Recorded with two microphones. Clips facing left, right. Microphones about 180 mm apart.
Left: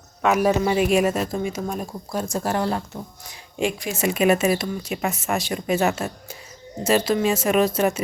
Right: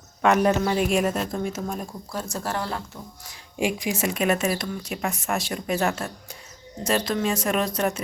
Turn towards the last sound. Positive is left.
turn(degrees=5)  # may be behind; listen again after turning